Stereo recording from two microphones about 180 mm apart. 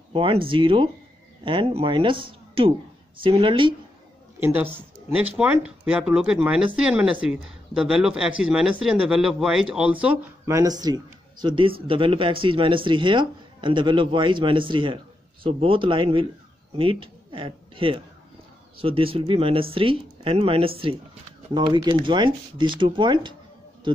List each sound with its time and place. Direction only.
0.1 s speech: 30° right (ahead or behind)
4.4 s speech: 15° right (ahead or behind)